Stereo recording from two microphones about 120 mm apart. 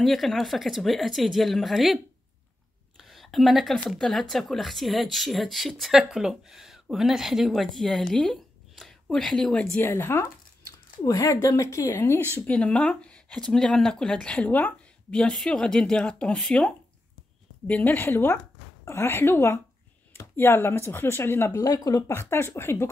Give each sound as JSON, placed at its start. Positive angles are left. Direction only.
{"t": 0.0, "sound": "speech", "side_deg": 0}
{"t": 3.0, "sound": "speech", "side_deg": 0}
{"t": 9.8, "sound": "speech", "side_deg": 20}